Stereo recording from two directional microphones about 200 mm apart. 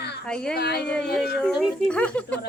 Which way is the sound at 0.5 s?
55° left (ahead or behind).